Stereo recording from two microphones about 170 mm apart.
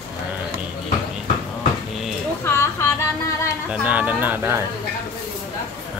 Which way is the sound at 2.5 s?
15° left (ahead or behind).